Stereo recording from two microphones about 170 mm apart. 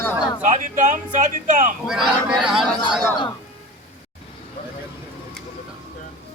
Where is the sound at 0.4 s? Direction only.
45° right (ahead or behind).